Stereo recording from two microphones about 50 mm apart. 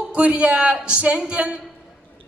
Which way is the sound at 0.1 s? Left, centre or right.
Right.